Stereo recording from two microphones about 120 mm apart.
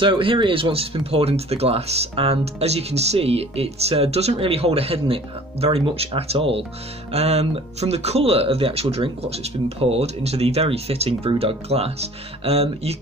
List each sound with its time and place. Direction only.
0.0 s speech: 45° right (ahead or behind)